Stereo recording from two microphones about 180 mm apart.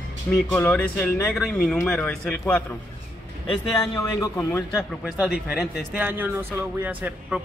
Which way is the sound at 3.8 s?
15° left (ahead or behind).